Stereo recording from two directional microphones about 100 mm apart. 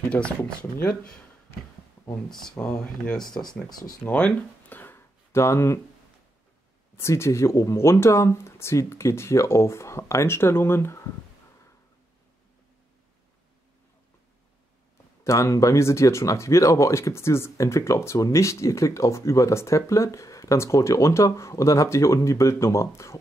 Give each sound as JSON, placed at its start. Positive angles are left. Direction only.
{"t": 0.1, "sound": "speech", "side_deg": 10}
{"t": 2.2, "sound": "speech", "side_deg": 5}
{"t": 2.6, "sound": "speech", "side_deg": 15}
{"t": 7.0, "sound": "speech", "side_deg": 25}
{"t": 15.2, "sound": "speech", "side_deg": 30}